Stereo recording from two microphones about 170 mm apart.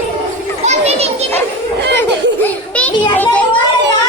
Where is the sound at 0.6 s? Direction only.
40° right (ahead or behind).